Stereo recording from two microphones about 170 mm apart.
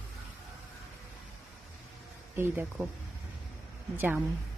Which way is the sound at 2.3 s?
15° right (ahead or behind).